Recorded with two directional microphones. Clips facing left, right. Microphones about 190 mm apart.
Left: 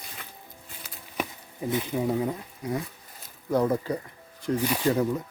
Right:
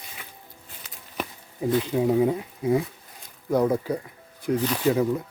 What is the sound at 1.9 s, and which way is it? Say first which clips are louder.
Speech: right 7 dB; 15° right (ahead or behind).